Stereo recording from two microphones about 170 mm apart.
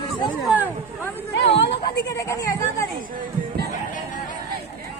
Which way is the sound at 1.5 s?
85° left.